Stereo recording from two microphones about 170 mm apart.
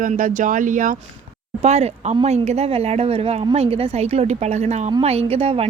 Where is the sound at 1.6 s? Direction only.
40° right (ahead or behind).